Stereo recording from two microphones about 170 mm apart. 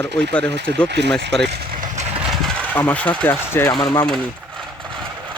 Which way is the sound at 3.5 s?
20° left (ahead or behind).